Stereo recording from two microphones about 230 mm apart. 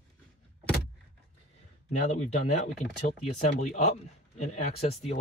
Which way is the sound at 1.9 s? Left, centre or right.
Left.